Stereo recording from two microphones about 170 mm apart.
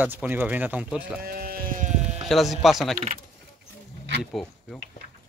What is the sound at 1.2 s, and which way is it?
Sheep, 60° right (ahead or behind).